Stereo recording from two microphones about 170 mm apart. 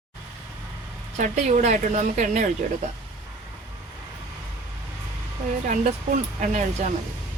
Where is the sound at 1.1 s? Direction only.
45° right (ahead or behind).